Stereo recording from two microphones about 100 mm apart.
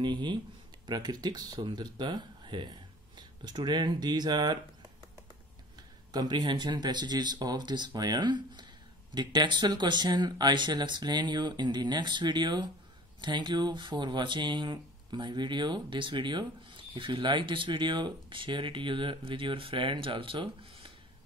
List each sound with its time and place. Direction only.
0.0 s speech: 50° right (ahead or behind)
6.1 s speech: 45° right (ahead or behind)